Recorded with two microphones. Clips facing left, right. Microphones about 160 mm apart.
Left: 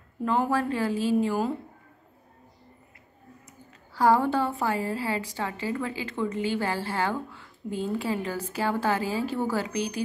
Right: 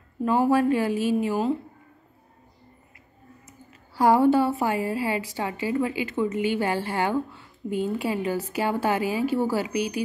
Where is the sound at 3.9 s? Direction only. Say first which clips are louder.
Right 4 dB; 15° right (ahead or behind).